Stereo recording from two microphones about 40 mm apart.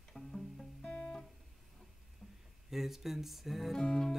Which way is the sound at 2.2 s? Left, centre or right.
Centre.